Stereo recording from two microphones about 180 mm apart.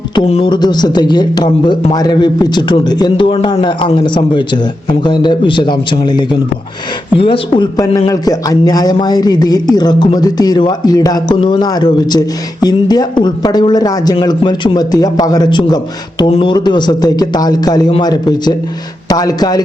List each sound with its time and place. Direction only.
0.2 s speech: 30° left (ahead or behind)